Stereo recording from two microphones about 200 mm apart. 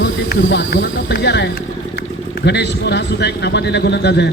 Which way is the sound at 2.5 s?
55° left (ahead or behind).